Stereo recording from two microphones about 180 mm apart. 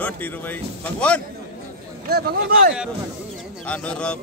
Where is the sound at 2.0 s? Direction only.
60° right (ahead or behind).